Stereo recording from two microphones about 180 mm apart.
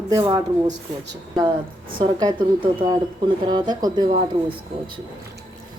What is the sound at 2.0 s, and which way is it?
A woman's voice, 25° right (ahead or behind).